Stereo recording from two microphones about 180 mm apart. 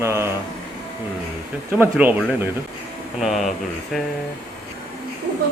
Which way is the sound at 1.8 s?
10° right (ahead or behind).